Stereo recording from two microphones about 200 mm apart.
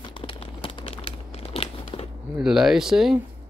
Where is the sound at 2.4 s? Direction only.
5° right (ahead or behind).